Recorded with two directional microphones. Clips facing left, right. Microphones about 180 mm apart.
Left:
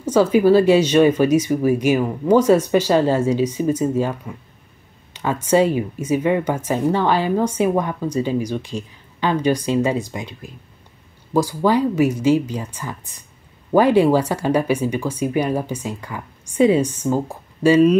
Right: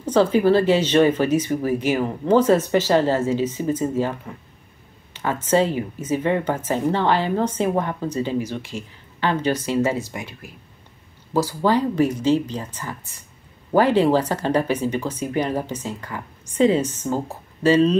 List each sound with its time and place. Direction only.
0.0 s speech: 10° left (ahead or behind)
5.1 s speech: 15° left (ahead or behind)